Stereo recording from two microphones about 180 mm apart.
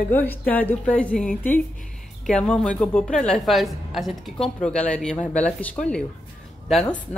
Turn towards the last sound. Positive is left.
turn(degrees=0)  # may be behind; listen again after turning